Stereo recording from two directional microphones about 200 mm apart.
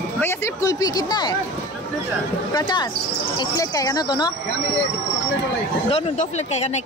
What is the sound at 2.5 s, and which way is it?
Speech, 20° left (ahead or behind).